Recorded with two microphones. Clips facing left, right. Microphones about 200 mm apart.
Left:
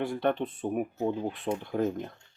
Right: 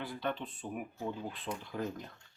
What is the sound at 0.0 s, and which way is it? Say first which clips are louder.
Speech: left 9 dB; 55° left (ahead or behind).